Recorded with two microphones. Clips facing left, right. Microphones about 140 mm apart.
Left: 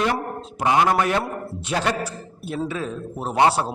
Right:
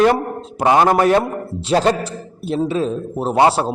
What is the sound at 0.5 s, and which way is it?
A man's voice, 35° right (ahead or behind).